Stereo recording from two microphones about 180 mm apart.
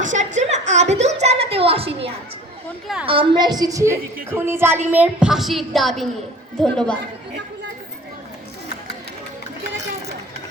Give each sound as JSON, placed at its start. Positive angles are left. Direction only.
{"t": 0.0, "sound": "a sound", "side_deg": -45}
{"t": 2.8, "sound": "a woman's voice", "side_deg": -5}
{"t": 3.1, "sound": "a woman's voice", "side_deg": -30}